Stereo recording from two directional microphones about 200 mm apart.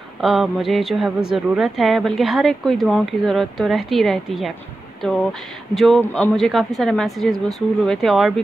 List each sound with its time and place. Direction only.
0.2 s a woman's voice: centre (ahead or behind)
5.8 s a woman's voice: centre (ahead or behind)